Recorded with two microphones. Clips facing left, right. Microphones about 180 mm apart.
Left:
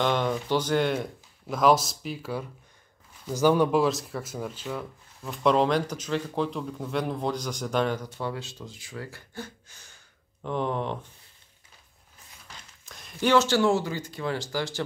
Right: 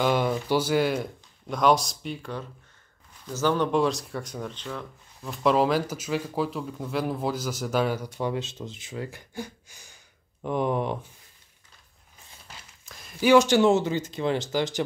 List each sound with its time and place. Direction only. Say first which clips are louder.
0.0 s speech: right 2 dB; 5° right (ahead or behind)
12.8 s speech: right 3 dB; centre (ahead or behind); by 14.8 s 20° right (ahead or behind)